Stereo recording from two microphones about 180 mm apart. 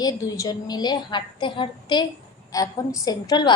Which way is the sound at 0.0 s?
20° left (ahead or behind).